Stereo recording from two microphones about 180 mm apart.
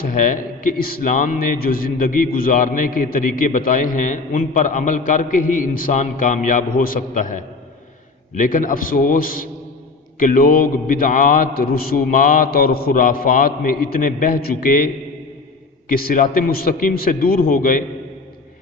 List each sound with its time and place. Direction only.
0.1 s a man's voice: 45° left (ahead or behind)
15.9 s a man's voice: 50° left (ahead or behind)